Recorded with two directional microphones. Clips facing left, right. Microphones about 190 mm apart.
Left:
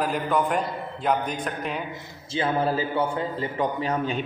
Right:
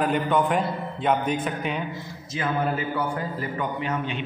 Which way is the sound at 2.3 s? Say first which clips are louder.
Left 2 dB; 30° left (ahead or behind).